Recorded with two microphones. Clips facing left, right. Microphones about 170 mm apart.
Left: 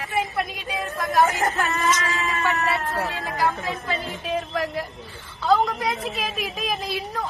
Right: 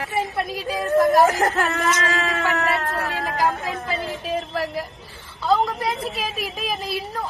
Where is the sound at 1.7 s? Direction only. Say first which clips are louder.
Right 2 dB; 70° right (ahead or behind).